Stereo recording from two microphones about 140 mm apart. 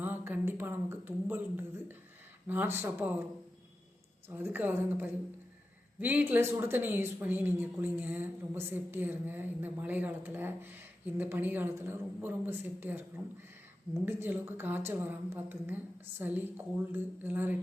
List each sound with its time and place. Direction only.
0.0 s a sound: 15° right (ahead or behind)
2.5 s speech: 15° right (ahead or behind)
4.3 s speech: 15° right (ahead or behind)